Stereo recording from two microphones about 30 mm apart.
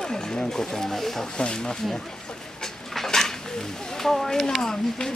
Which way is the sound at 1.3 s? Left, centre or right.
Left.